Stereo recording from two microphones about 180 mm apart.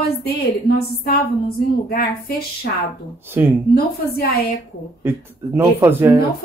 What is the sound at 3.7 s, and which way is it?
Speech, 60° left (ahead or behind).